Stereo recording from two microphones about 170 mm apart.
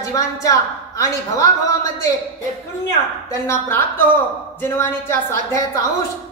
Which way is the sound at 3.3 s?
15° left (ahead or behind).